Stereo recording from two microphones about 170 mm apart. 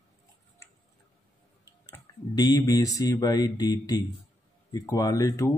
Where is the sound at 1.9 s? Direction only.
20° left (ahead or behind).